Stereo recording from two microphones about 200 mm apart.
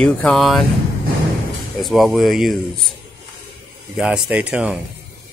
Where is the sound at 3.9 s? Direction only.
5° right (ahead or behind).